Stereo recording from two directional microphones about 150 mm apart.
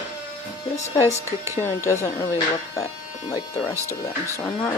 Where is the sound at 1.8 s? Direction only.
20° left (ahead or behind).